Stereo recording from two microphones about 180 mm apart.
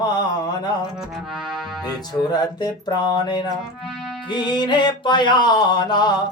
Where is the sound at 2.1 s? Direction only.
20° left (ahead or behind).